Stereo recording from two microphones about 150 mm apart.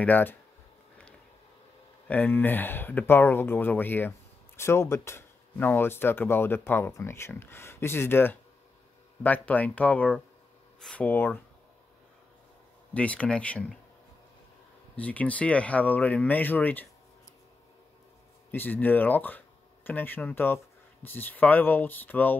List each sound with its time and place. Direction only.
0.0 s speech: 10° left (ahead or behind)
2.0 s speech: 10° left (ahead or behind)
12.9 s speech: 10° left (ahead or behind)
15.0 s speech: 10° left (ahead or behind)
18.5 s speech: 15° left (ahead or behind)